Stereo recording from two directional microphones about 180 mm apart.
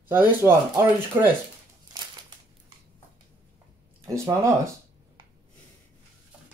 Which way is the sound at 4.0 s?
15° right (ahead or behind).